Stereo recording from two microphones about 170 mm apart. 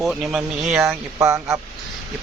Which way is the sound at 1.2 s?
15° right (ahead or behind).